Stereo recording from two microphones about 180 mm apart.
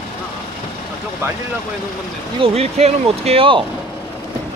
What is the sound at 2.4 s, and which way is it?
Speech, 35° right (ahead or behind).